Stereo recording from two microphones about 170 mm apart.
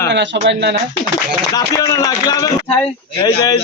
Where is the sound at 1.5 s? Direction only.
20° left (ahead or behind).